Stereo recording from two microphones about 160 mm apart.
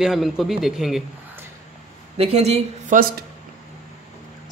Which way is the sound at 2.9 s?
65° right (ahead or behind).